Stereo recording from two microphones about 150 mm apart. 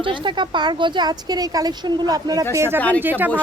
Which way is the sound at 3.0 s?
15° right (ahead or behind).